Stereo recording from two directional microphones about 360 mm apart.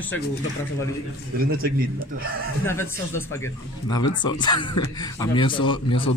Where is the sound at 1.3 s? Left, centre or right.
Right.